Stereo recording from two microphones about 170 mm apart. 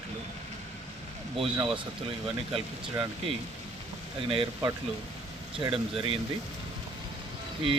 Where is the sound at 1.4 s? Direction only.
30° right (ahead or behind).